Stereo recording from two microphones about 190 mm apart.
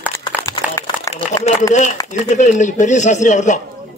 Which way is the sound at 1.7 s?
40° left (ahead or behind).